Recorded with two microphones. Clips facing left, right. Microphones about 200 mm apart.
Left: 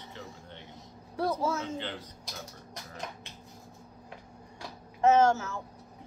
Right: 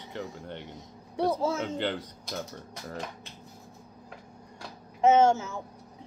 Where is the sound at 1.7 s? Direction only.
70° right (ahead or behind).